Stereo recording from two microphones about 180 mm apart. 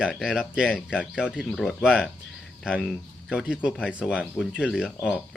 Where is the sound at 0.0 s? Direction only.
Centre (ahead or behind).